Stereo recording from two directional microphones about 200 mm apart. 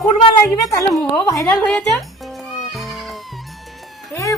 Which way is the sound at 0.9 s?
5° left (ahead or behind).